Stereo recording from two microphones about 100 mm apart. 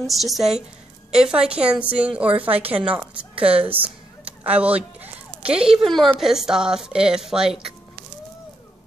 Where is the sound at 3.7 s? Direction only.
15° right (ahead or behind); by 6.1 s centre (ahead or behind).